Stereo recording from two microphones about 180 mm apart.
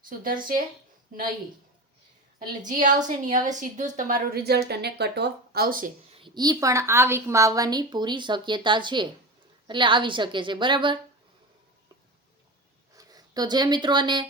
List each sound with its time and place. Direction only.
0.0 s speech: 50° right (ahead or behind)
2.6 s a woman's voice: 45° right (ahead or behind)
6.1 s a woman's voice: 25° right (ahead or behind)
13.0 s speech: 20° right (ahead or behind)